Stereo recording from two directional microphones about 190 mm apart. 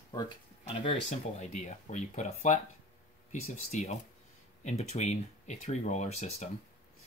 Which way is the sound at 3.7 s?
35° left (ahead or behind).